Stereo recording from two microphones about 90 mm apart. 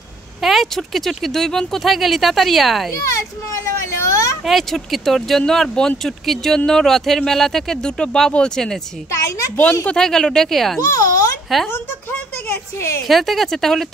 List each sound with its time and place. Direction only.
0.4 s speech: centre (ahead or behind)
2.9 s a child's voice: 35° left (ahead or behind)
3.6 s vehicle: 35° left (ahead or behind)
4.5 s speech: centre (ahead or behind)
9.8 s speech: 5° left (ahead or behind)
10.8 s a child's voice: 40° left (ahead or behind)
11.7 s a woman's voice: 25° left (ahead or behind)
13.0 s speech: centre (ahead or behind)